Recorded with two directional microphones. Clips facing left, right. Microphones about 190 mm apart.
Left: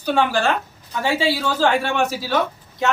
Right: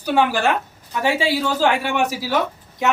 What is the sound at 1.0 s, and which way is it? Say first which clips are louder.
Speech: right 1 dB; 15° right (ahead or behind).